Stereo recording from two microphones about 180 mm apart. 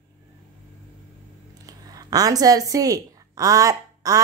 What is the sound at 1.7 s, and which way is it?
A woman's voice, 20° right (ahead or behind).